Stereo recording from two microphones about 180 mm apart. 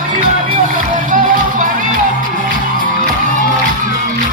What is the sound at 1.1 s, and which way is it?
Music, 45° right (ahead or behind).